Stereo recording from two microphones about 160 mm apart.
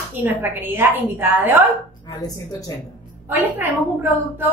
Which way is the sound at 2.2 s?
20° left (ahead or behind).